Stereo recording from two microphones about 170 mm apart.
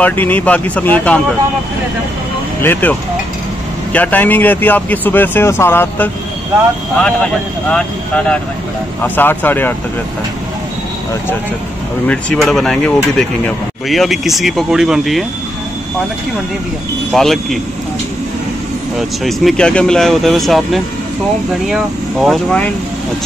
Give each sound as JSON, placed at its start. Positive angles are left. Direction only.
{"t": 0.0, "sound": "speech", "side_deg": 10}
{"t": 2.6, "sound": "speech", "side_deg": 10}
{"t": 9.0, "sound": "speech", "side_deg": 10}
{"t": 12.1, "sound": "speech", "side_deg": 5}
{"t": 17.1, "sound": "speech", "side_deg": 0}
{"t": 18.9, "sound": "speech", "side_deg": 0}